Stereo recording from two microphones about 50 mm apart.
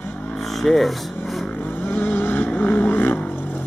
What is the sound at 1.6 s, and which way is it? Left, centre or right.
Vehicle, left.